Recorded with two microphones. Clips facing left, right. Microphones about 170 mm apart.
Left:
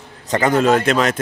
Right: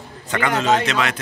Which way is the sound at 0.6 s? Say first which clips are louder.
Left 4 dB; 55° left (ahead or behind).